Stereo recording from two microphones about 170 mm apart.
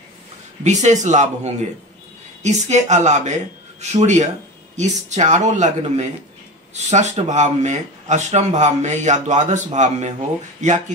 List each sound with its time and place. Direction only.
0.7 s speech: 45° right (ahead or behind)